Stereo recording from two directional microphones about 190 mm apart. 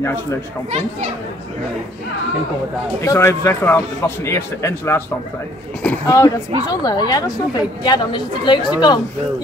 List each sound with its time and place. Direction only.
0.0 s a man's voice: 15° left (ahead or behind)
3.0 s a man's voice: 15° left (ahead or behind)